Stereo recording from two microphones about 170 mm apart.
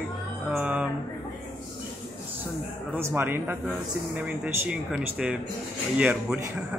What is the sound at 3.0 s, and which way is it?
A man's voice, 10° right (ahead or behind).